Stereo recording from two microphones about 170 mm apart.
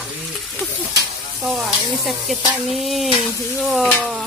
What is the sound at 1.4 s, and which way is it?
Frying, centre (ahead or behind).